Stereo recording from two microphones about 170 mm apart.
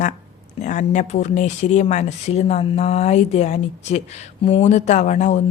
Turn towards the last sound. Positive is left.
turn(degrees=45)  # may be behind; listen again after turning